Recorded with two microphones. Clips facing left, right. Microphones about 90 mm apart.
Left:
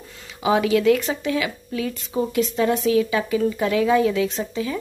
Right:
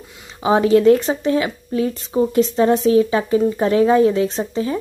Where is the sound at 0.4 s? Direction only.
35° right (ahead or behind).